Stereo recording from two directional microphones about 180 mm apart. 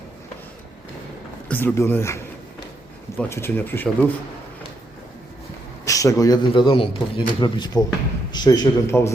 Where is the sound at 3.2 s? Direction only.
10° left (ahead or behind).